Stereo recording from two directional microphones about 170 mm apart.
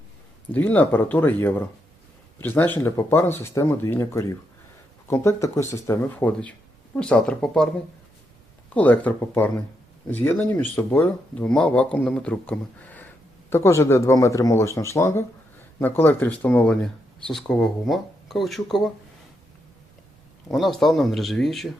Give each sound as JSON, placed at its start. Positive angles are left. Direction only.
{"t": 0.5, "sound": "speech", "side_deg": 10}
{"t": 8.7, "sound": "speech", "side_deg": 10}
{"t": 20.5, "sound": "speech", "side_deg": 0}